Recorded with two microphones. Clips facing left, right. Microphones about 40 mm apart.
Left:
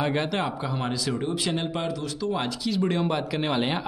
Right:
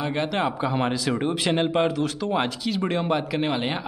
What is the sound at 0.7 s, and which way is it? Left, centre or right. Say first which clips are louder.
Speech: right 4 dB; right.